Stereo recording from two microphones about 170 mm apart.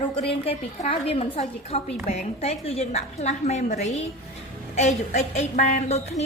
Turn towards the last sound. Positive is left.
turn(degrees=40)  # may be behind; listen again after turning